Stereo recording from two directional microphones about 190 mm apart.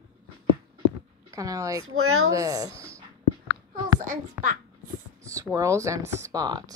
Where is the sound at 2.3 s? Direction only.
20° right (ahead or behind).